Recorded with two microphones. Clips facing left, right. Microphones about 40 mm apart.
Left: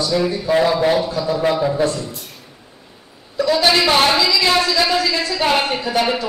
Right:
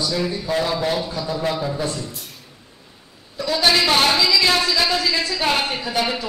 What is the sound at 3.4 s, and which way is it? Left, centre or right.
A woman's voice, centre.